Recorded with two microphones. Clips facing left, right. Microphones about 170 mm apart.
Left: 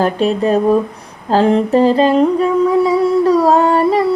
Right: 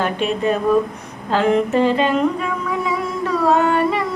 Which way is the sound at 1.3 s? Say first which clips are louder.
Left 5 dB; 35° left (ahead or behind).